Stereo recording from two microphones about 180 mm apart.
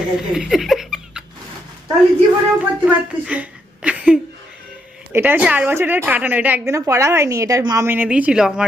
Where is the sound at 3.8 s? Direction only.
5° right (ahead or behind).